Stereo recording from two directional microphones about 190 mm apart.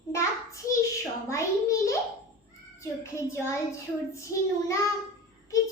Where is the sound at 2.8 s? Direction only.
15° left (ahead or behind).